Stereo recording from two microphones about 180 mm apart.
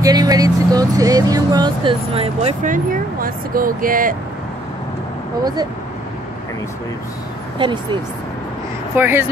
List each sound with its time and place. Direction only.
0.0 s speech: 20° right (ahead or behind)
2.6 s speech: 50° right (ahead or behind)
7.5 s speech: 25° right (ahead or behind)
8.9 s speech: 10° right (ahead or behind)